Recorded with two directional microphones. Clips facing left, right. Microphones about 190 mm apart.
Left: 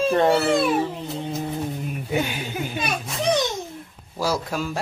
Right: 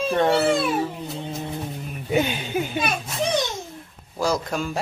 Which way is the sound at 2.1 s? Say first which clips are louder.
Right 4 dB; 20° right (ahead or behind).